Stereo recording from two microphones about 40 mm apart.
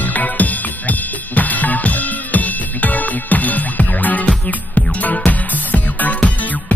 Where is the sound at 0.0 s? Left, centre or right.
Left.